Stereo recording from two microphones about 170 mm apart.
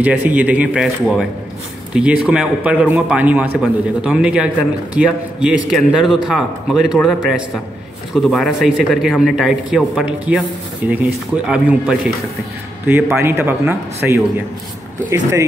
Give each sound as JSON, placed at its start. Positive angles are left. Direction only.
{"t": 0.0, "sound": "a man's voice", "side_deg": -10}
{"t": 2.0, "sound": "a man's voice", "side_deg": -5}